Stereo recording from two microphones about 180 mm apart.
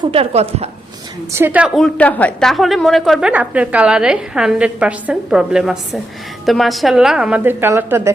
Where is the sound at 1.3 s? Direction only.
10° right (ahead or behind).